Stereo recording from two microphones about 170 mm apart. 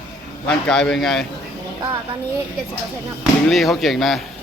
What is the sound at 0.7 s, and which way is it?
Speech, 5° left (ahead or behind).